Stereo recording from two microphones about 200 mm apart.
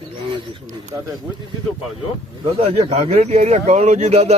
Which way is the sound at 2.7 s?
30° right (ahead or behind).